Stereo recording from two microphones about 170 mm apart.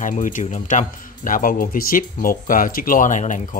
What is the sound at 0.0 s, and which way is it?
Speech, 50° left (ahead or behind).